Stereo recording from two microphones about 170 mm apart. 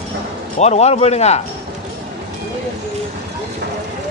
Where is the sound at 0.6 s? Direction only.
40° left (ahead or behind).